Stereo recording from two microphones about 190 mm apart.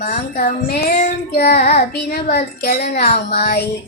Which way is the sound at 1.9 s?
55° left (ahead or behind).